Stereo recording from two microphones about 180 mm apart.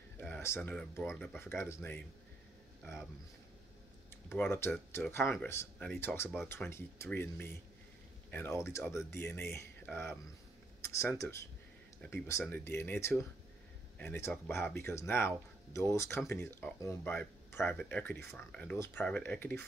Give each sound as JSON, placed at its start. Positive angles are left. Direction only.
{"t": 0.2, "sound": "speech", "side_deg": 10}
{"t": 4.4, "sound": "speech", "side_deg": 10}